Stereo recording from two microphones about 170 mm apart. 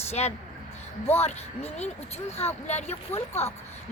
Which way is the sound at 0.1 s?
40° left (ahead or behind).